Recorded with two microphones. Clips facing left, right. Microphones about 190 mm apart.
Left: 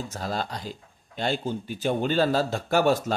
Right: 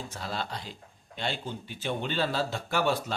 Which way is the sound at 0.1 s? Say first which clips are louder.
Left 5 dB; 40° left (ahead or behind).